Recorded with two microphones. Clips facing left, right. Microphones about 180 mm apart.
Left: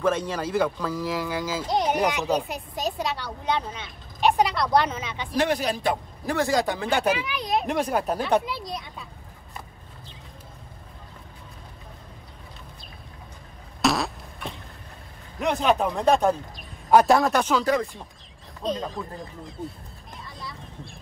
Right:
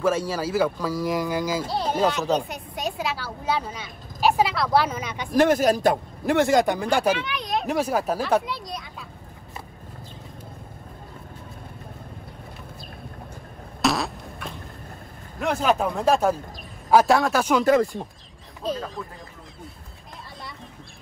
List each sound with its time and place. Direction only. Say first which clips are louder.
0.0 s speech: right 1 dB; 5° right (ahead or behind)
1.0 s speech: right 5 dB; 15° right (ahead or behind)
1.7 s speech: left 3 dB; 15° left (ahead or behind)
2.3 s speech: right 1 dB; centre (ahead or behind)
5.1 s speech: right 6 dB; 45° right (ahead or behind)
6.6 s speech: right 4 dB; 15° right (ahead or behind)
6.9 s speech: right 2 dB; 5° left (ahead or behind)
13.7 s fart: even; centre (ahead or behind)
15.3 s speech: even; centre (ahead or behind)
18.0 s speech: right 8 dB; 35° right (ahead or behind)
18.6 s speech: even; centre (ahead or behind)